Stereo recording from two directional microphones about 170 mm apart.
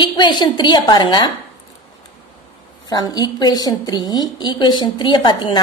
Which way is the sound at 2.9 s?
25° left (ahead or behind).